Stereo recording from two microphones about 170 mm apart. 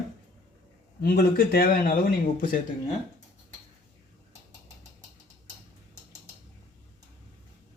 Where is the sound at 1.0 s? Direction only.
60° left (ahead or behind).